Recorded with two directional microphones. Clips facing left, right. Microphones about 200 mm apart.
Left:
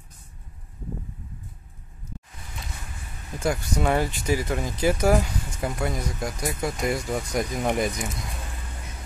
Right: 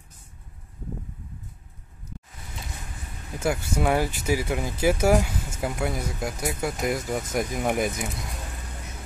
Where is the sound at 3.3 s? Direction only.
5° right (ahead or behind).